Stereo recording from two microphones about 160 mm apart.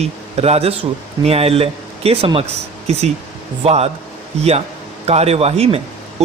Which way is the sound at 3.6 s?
40° right (ahead or behind).